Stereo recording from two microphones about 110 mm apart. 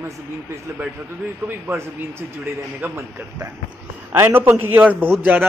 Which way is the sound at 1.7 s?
25° right (ahead or behind).